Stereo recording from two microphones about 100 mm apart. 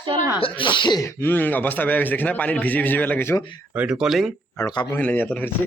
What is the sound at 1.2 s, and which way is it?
A man's voice, 20° left (ahead or behind).